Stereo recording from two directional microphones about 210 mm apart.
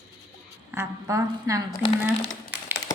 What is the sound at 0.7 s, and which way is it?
Speech, 15° right (ahead or behind).